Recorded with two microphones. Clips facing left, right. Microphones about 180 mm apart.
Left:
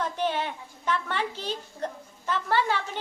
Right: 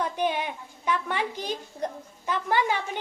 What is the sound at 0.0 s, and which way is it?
A child's voice, 10° right (ahead or behind).